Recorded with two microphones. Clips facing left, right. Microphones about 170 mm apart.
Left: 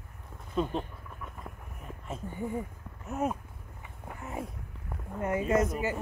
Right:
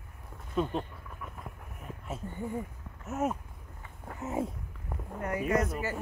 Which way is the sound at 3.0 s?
5° right (ahead or behind).